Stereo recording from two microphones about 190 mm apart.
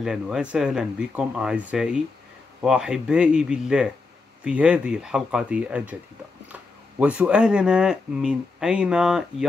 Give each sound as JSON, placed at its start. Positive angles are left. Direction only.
{"t": 0.0, "sound": "speech", "side_deg": -5}